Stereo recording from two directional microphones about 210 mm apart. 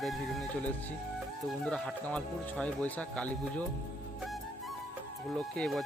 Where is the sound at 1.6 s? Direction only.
5° left (ahead or behind).